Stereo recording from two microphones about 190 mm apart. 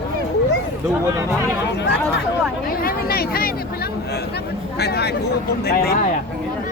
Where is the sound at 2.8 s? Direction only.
50° left (ahead or behind).